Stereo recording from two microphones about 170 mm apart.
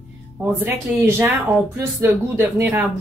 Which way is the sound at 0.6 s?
15° right (ahead or behind).